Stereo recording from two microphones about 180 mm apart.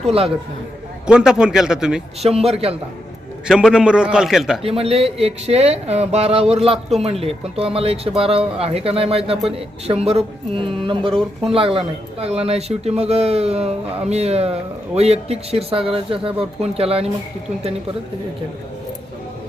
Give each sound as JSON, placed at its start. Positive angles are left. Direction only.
{"t": 0.0, "sound": "speech", "side_deg": -35}
{"t": 1.0, "sound": "a man's voice", "side_deg": -5}
{"t": 2.2, "sound": "speech", "side_deg": -35}
{"t": 3.4, "sound": "a man's voice", "side_deg": -5}
{"t": 4.6, "sound": "speech", "side_deg": -35}